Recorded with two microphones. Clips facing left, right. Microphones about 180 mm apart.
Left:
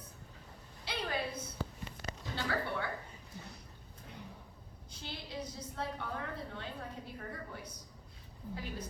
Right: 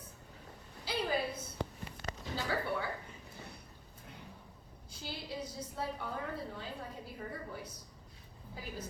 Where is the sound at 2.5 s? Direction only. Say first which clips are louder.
Even; centre (ahead or behind).